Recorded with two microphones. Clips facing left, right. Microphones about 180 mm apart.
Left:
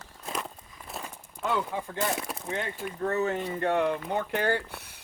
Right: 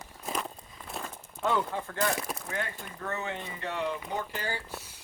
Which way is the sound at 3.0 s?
40° left (ahead or behind).